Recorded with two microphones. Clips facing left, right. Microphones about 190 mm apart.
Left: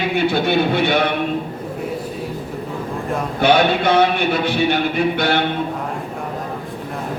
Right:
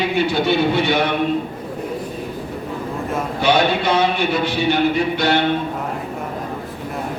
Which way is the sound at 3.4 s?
55° left (ahead or behind).